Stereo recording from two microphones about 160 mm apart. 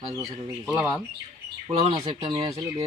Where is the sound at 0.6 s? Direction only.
5° right (ahead or behind).